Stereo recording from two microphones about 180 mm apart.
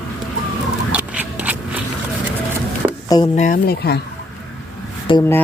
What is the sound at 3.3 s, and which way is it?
Speech, 45° left (ahead or behind).